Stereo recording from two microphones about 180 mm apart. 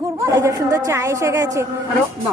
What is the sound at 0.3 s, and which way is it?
Speech, 15° right (ahead or behind).